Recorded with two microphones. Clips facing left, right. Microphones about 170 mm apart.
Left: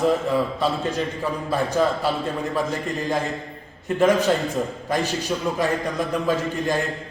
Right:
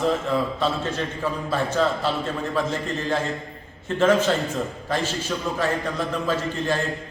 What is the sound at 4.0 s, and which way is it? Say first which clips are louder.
A man's voice: left 1 dB; 15° left (ahead or behind).